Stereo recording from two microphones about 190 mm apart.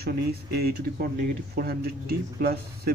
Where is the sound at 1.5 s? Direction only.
55° right (ahead or behind).